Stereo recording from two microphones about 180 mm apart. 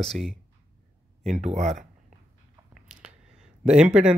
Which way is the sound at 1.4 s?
40° right (ahead or behind).